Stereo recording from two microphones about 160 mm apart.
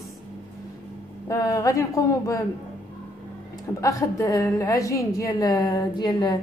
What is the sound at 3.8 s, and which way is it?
A woman's voice, 20° left (ahead or behind).